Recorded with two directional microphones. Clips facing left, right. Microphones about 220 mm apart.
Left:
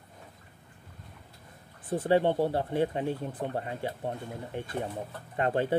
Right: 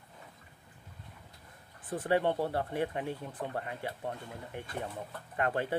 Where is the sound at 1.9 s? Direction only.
30° left (ahead or behind).